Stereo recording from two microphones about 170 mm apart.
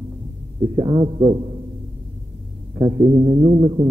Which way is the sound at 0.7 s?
25° right (ahead or behind).